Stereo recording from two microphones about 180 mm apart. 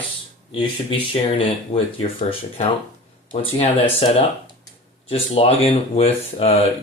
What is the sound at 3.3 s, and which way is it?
Speech, 35° left (ahead or behind).